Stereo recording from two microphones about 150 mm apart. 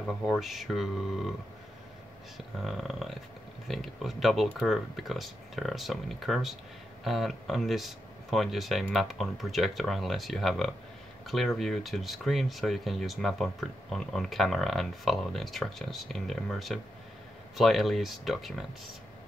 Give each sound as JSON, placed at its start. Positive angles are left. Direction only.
{"t": 0.0, "sound": "speech", "side_deg": 0}
{"t": 2.3, "sound": "speech", "side_deg": 0}